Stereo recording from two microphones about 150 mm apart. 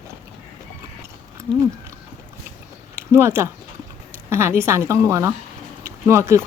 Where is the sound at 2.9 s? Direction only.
15° right (ahead or behind).